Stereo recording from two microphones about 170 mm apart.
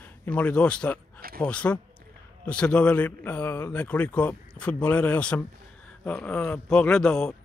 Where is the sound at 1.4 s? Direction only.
10° left (ahead or behind).